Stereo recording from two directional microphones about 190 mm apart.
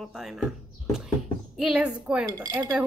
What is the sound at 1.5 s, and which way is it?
Speech, centre (ahead or behind).